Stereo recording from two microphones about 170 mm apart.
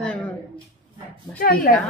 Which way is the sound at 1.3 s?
60° left (ahead or behind).